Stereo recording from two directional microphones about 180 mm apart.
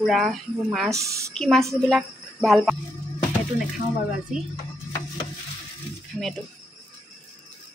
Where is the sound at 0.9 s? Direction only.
15° right (ahead or behind).